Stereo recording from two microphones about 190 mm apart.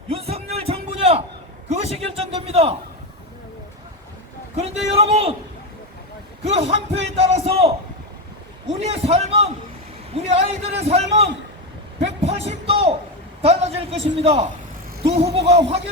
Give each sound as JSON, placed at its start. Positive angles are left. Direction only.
{"t": 0.1, "sound": "a sound", "side_deg": -30}
{"t": 4.5, "sound": "a man's voice", "side_deg": -30}
{"t": 6.4, "sound": "a man's voice", "side_deg": -35}